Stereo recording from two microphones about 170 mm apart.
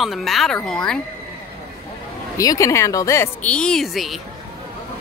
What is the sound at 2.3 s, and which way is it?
Speech, 20° left (ahead or behind).